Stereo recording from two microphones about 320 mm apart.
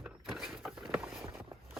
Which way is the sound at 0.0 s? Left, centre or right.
Centre.